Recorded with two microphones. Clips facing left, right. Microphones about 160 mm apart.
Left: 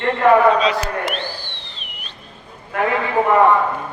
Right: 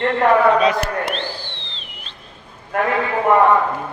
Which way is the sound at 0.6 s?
55° right (ahead or behind).